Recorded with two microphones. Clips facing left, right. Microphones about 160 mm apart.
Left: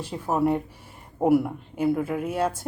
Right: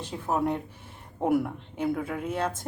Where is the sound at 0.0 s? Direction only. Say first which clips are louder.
Left 4 dB; 10° left (ahead or behind).